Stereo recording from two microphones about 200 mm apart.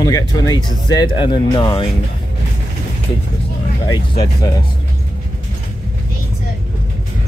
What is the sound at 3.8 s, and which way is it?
Speech, 20° left (ahead or behind).